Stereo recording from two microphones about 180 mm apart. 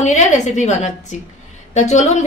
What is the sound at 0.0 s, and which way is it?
A woman's voice, 40° left (ahead or behind).